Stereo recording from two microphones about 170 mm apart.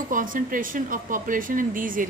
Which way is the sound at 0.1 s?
50° right (ahead or behind).